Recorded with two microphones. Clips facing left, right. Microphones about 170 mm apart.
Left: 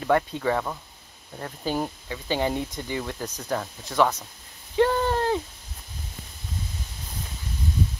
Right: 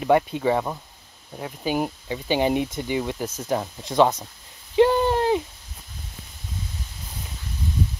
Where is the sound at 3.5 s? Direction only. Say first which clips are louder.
Right 4 dB; 15° right (ahead or behind).